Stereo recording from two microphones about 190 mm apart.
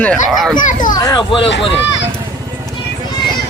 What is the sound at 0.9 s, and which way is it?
Speech, 20° left (ahead or behind).